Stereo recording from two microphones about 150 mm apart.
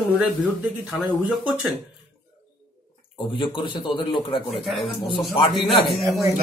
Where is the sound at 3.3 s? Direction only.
35° left (ahead or behind).